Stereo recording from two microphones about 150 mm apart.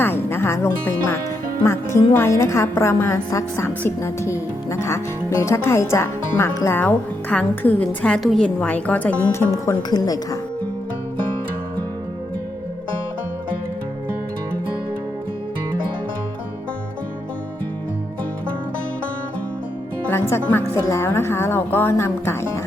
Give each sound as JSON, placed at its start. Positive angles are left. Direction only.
{"t": 0.0, "sound": "a woman's voice", "side_deg": 15}
{"t": 20.1, "sound": "speech", "side_deg": 15}